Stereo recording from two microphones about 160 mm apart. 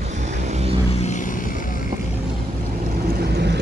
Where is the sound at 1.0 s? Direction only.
55° left (ahead or behind).